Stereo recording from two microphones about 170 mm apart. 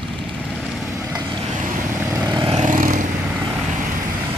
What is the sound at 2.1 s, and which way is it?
Vehicle, 20° right (ahead or behind).